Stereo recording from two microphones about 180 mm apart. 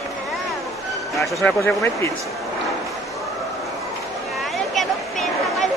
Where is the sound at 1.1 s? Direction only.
Centre (ahead or behind).